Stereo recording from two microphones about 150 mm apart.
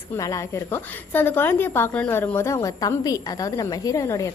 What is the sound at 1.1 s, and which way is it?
A woman's voice, 15° left (ahead or behind).